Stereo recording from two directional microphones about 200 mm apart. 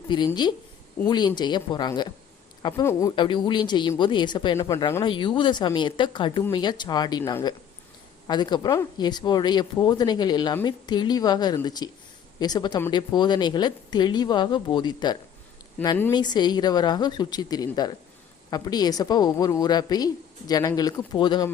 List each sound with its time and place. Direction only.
0.1 s speech: 25° left (ahead or behind)